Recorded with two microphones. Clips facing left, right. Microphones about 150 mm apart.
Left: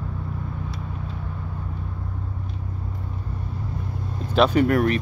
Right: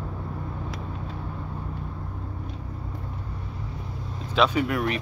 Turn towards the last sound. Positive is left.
turn(degrees=50)  # may be behind; listen again after turning